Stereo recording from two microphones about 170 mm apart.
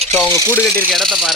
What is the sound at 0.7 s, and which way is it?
Speech, 5° left (ahead or behind).